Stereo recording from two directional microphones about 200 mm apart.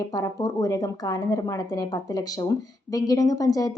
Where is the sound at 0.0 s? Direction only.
20° left (ahead or behind).